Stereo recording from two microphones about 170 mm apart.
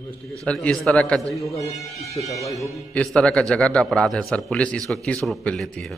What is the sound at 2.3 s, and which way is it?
Speech, 20° left (ahead or behind).